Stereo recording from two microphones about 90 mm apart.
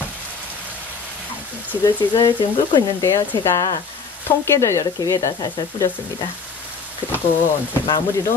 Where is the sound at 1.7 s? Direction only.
40° left (ahead or behind).